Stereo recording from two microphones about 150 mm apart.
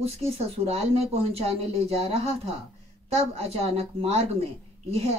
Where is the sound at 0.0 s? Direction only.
40° right (ahead or behind).